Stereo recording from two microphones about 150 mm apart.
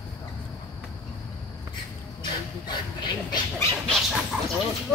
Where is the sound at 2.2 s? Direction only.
30° left (ahead or behind).